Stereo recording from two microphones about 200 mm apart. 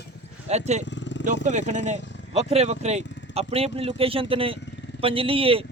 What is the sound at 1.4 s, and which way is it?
Speech, 35° right (ahead or behind).